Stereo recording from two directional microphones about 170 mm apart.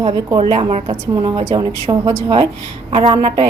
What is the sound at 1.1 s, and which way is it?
A woman's voice, 25° right (ahead or behind).